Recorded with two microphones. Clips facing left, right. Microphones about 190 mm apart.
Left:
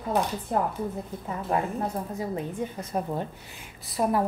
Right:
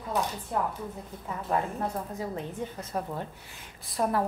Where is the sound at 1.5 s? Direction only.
15° left (ahead or behind).